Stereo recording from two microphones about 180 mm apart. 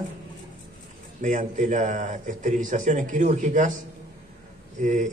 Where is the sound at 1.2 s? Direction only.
40° right (ahead or behind).